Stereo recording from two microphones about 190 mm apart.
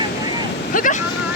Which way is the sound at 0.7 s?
45° left (ahead or behind).